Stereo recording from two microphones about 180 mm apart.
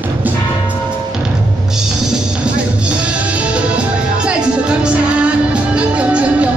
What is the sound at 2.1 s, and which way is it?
Music, 5° right (ahead or behind).